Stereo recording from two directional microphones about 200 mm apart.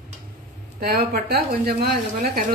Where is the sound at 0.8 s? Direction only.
50° right (ahead or behind).